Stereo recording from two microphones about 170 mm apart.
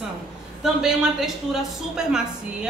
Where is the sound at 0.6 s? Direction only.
Centre (ahead or behind).